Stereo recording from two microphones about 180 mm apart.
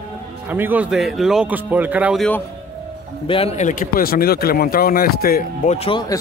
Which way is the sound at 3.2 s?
30° left (ahead or behind).